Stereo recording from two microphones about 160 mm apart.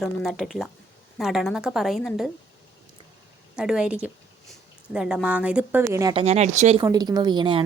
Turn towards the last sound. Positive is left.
turn(degrees=-30)  # may be behind; listen again after turning